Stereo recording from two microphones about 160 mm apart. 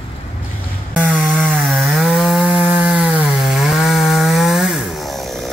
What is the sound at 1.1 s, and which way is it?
Wood, centre (ahead or behind).